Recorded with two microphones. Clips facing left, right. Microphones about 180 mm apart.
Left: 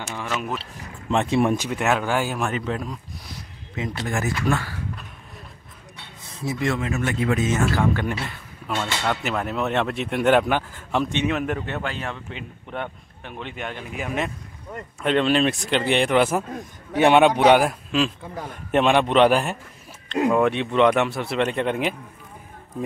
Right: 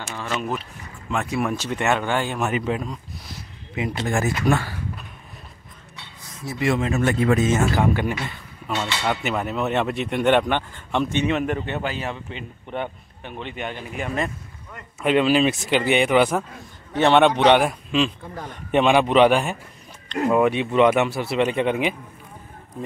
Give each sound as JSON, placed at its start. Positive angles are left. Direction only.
{"t": 0.0, "sound": "a man's voice", "side_deg": 15}
{"t": 0.3, "sound": "speech", "side_deg": 0}
{"t": 1.1, "sound": "speech", "side_deg": 25}
{"t": 1.6, "sound": "speech", "side_deg": 5}
{"t": 2.4, "sound": "a man's voice", "side_deg": -10}
{"t": 4.0, "sound": "speech", "side_deg": -25}
{"t": 6.8, "sound": "speech", "side_deg": -35}
{"t": 8.3, "sound": "a sound", "side_deg": 0}
{"t": 9.0, "sound": "a man's voice", "side_deg": -5}